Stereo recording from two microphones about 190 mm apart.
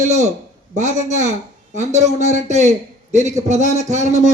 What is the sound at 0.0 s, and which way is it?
A man's voice, 35° right (ahead or behind).